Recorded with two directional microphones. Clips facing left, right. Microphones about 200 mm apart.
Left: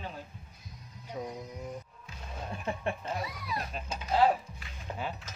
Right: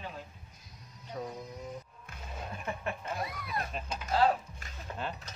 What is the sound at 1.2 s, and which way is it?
Cutlery, 10° left (ahead or behind).